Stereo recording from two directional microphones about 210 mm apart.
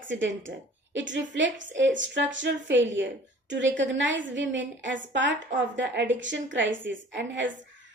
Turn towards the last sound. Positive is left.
turn(degrees=-60)  # may be behind; listen again after turning